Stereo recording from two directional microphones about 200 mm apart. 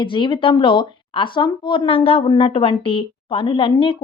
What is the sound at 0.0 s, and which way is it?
Speech, 25° left (ahead or behind).